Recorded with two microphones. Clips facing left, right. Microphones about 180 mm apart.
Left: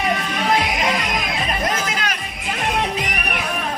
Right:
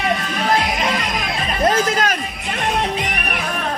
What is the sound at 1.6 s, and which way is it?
Music, 35° right (ahead or behind).